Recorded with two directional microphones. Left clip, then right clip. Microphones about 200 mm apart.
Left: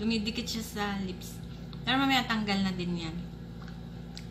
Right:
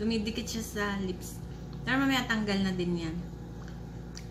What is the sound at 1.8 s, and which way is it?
Speech, 5° right (ahead or behind).